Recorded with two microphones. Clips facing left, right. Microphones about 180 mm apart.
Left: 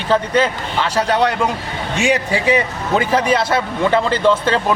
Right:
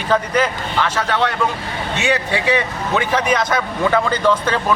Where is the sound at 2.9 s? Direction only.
30° left (ahead or behind).